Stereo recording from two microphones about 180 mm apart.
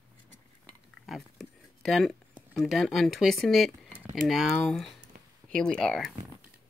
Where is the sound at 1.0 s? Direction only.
Centre (ahead or behind).